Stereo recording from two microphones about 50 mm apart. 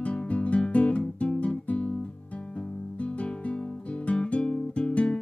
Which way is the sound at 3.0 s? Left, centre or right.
Left.